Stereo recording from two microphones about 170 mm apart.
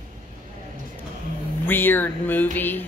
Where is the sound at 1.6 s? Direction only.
10° left (ahead or behind).